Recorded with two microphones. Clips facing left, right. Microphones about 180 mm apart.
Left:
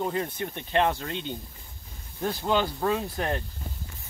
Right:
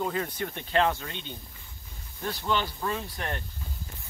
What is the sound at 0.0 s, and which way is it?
Speech, 20° left (ahead or behind).